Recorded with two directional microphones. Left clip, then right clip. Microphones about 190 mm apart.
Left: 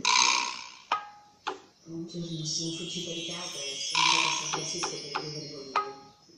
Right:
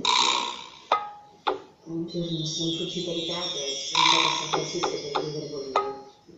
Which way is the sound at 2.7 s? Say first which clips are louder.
Right 6 dB; 5° left (ahead or behind).